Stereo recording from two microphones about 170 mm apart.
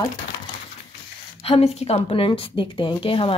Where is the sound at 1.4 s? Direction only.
35° left (ahead or behind).